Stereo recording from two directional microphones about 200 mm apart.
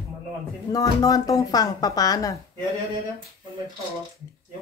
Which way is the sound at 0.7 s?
20° left (ahead or behind).